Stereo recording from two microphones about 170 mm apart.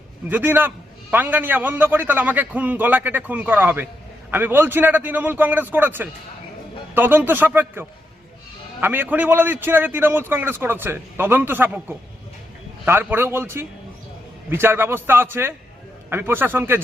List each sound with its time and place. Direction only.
0.3 s a man's voice: 10° right (ahead or behind)